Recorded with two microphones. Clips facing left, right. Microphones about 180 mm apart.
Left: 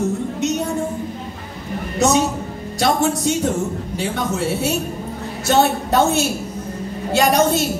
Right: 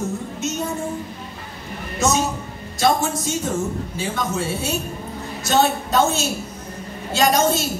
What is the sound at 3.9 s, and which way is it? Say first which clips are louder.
A woman's voice: left 4 dB; 65° left (ahead or behind).